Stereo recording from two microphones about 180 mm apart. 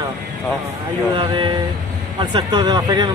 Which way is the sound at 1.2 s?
25° right (ahead or behind).